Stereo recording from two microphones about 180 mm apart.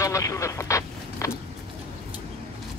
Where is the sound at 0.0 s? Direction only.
20° left (ahead or behind).